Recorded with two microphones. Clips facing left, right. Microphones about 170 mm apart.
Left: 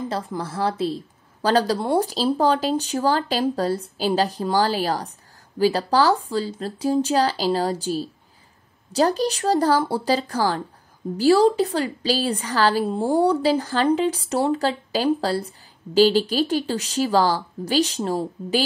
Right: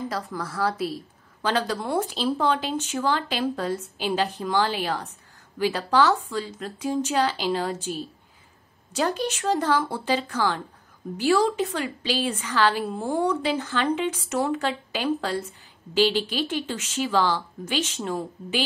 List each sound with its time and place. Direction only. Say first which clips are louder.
0.1 s a woman's voice: left 3 dB; 30° left (ahead or behind)